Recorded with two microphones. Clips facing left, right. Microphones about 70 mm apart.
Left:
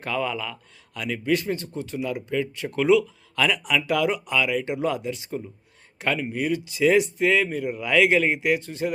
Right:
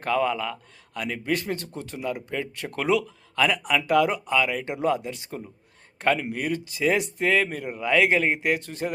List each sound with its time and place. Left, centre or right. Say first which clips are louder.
0.0 s a man's voice: right 3 dB; right
3.5 s a man's voice: right 2 dB; right
7.8 s speech: left 1 dB; right